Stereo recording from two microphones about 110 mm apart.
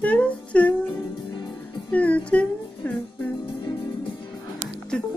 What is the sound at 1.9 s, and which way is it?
Speech, 10° left (ahead or behind).